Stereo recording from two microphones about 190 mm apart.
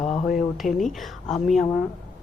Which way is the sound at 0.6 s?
Centre (ahead or behind).